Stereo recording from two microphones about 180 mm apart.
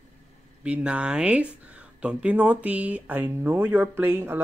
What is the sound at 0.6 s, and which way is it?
Speech, 5° right (ahead or behind).